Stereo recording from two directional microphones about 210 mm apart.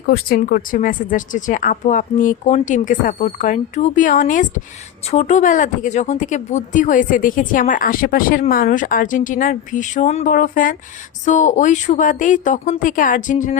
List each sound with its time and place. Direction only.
0.1 s speech: 45° left (ahead or behind)